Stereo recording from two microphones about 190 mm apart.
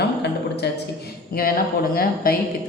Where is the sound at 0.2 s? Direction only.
60° left (ahead or behind).